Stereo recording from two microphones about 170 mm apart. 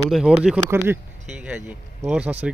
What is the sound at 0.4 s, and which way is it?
Speech, 5° right (ahead or behind).